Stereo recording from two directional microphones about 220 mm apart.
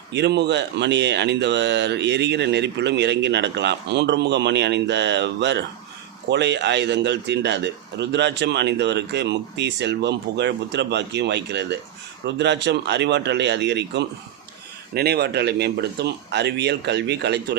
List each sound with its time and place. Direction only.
0.1 s speech: 50° right (ahead or behind)